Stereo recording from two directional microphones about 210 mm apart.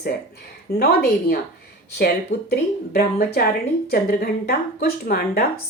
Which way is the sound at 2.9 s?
45° left (ahead or behind).